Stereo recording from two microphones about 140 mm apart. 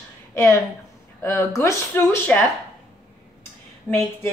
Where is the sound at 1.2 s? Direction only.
20° left (ahead or behind).